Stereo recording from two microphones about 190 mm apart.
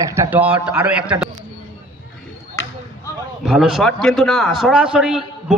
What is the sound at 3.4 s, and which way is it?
A man's voice, centre (ahead or behind).